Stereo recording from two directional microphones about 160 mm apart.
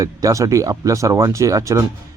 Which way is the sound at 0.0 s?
20° right (ahead or behind).